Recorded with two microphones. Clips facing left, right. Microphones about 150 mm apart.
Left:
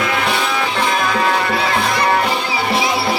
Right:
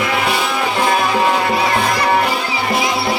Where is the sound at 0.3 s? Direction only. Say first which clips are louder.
Right 1 dB; 10° right (ahead or behind).